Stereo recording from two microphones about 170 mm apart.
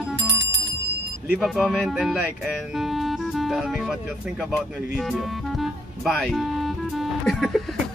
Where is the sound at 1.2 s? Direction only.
Centre (ahead or behind).